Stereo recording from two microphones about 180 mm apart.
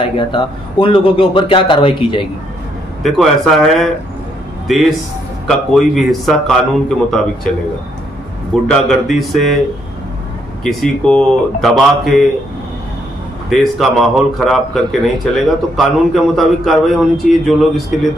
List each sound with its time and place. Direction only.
0.0 s a man's voice: 30° left (ahead or behind)
3.0 s a man's voice: centre (ahead or behind)
8.6 s a man's voice: centre (ahead or behind)
10.6 s a man's voice: centre (ahead or behind)
13.5 s a man's voice: centre (ahead or behind)